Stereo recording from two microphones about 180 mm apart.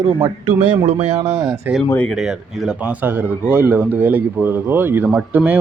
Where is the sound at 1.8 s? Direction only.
10° left (ahead or behind).